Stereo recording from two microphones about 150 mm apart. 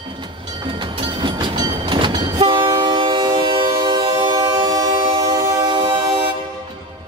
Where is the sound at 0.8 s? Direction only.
30° right (ahead or behind).